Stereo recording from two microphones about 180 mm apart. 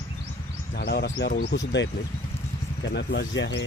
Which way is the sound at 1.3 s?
50° left (ahead or behind).